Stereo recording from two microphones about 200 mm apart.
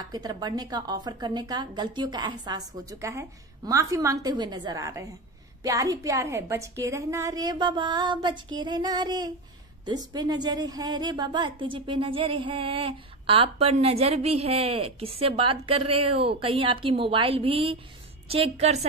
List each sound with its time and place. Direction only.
0.0 s a woman's voice: 20° right (ahead or behind)